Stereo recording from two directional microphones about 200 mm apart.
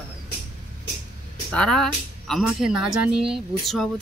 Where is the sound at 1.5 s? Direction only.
5° left (ahead or behind).